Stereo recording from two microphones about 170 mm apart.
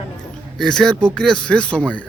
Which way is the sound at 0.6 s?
5° left (ahead or behind).